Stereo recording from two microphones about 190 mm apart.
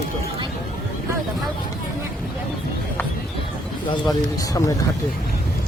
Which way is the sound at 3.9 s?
20° left (ahead or behind).